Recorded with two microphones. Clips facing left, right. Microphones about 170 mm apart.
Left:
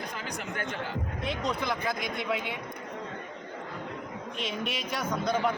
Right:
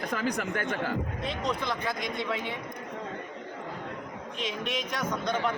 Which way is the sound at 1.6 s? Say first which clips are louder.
Even; centre (ahead or behind).